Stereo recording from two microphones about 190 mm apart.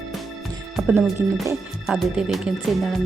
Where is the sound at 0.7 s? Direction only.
5° right (ahead or behind).